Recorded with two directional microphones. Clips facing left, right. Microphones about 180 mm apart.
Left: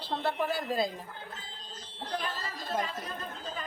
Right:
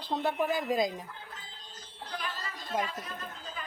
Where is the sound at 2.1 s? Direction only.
35° left (ahead or behind).